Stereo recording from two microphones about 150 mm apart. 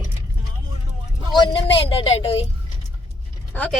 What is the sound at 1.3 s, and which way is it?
A woman's voice, 35° left (ahead or behind).